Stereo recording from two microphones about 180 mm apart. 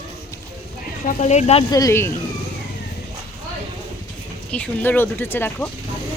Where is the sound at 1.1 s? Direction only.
40° left (ahead or behind).